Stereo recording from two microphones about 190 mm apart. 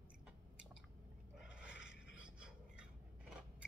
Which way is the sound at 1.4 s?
5° right (ahead or behind).